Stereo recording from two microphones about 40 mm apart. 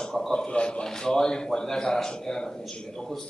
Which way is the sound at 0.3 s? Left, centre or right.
Left.